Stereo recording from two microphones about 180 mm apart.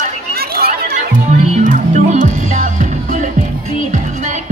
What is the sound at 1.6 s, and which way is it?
Music, 45° right (ahead or behind).